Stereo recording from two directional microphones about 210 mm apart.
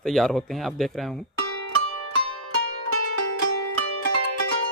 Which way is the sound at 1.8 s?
90° right.